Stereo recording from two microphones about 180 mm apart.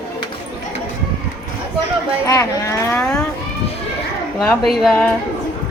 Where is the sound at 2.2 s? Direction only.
20° left (ahead or behind).